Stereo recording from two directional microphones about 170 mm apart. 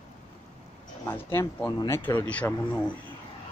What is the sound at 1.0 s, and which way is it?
Speech, 15° left (ahead or behind).